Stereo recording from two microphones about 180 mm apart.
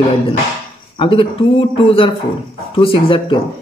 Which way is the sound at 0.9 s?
30° left (ahead or behind).